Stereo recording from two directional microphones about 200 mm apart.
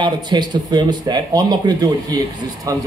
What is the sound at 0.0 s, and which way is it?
Speech, 20° right (ahead or behind).